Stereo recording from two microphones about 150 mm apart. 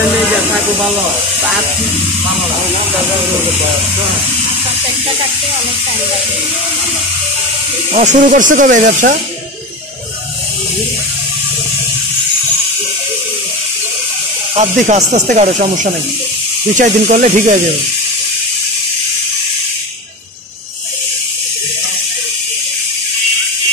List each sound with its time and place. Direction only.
7.9 s speech: 50° right (ahead or behind)
14.5 s speech: 45° right (ahead or behind)